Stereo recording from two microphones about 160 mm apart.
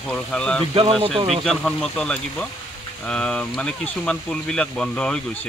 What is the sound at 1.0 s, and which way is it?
Speech, 35° right (ahead or behind).